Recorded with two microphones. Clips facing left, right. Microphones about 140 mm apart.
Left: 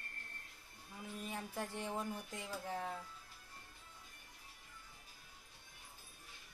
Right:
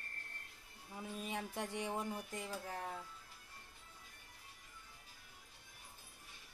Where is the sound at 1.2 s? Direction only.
20° right (ahead or behind).